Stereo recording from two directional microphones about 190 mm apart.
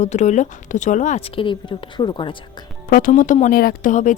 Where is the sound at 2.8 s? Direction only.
45° left (ahead or behind).